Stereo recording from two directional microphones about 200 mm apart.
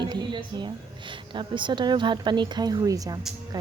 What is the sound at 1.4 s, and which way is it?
Speech, 25° right (ahead or behind).